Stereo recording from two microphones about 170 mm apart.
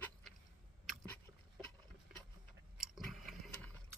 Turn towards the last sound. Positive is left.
turn(degrees=5)  # may be behind; listen again after turning